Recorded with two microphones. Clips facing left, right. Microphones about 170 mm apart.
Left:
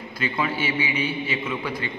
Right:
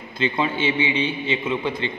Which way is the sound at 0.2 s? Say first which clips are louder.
Right 4 dB; 25° right (ahead or behind).